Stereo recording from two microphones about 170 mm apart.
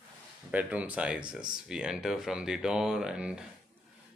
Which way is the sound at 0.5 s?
10° right (ahead or behind).